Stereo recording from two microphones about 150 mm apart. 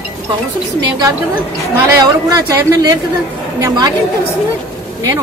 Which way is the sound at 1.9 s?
25° right (ahead or behind).